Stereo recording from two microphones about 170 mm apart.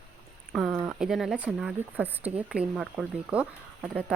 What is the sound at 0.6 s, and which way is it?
A woman's voice, 10° right (ahead or behind).